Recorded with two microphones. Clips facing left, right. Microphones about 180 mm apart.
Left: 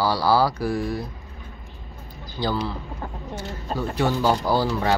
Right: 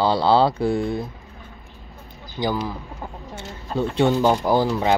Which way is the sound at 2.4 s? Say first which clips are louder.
Right 1 dB; 15° right (ahead or behind).